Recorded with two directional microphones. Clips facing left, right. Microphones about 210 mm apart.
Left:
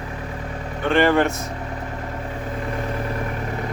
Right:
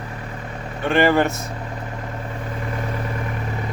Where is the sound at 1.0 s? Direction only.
5° right (ahead or behind).